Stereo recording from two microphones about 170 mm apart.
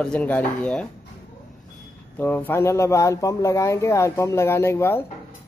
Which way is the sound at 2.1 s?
10° left (ahead or behind).